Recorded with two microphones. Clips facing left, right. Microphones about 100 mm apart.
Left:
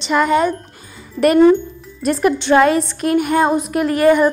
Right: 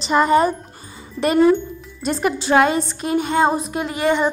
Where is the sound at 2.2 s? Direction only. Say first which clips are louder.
Left 3 dB; 5° right (ahead or behind).